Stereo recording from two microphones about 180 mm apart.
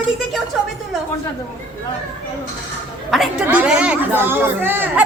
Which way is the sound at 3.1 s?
5° right (ahead or behind).